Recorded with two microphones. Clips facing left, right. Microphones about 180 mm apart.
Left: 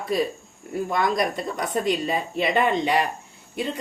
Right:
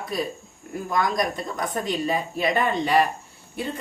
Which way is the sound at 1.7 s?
25° left (ahead or behind).